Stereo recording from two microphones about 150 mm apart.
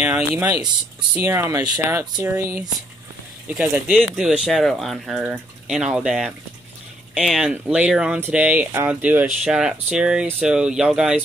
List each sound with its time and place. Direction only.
0.0 s speech: 10° right (ahead or behind)
1.2 s speech: 20° right (ahead or behind)
3.4 s speech: 10° right (ahead or behind)
4.0 s speech: 5° left (ahead or behind)